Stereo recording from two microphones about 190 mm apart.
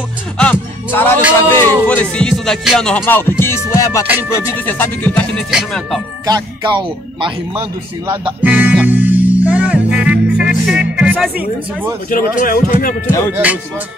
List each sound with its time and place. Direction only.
0.4 s music: 10° left (ahead or behind)
4.3 s speech: 15° left (ahead or behind)
6.2 s speech: 20° right (ahead or behind)
8.3 s music: 10° right (ahead or behind)
10.7 s speech: 5° right (ahead or behind)
12.1 s speech: 45° left (ahead or behind)
13.3 s speech: 5° right (ahead or behind)